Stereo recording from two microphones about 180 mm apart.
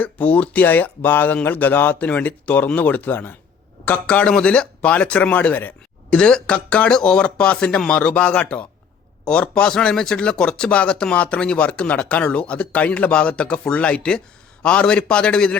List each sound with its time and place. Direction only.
0.0 s speech: 10° left (ahead or behind)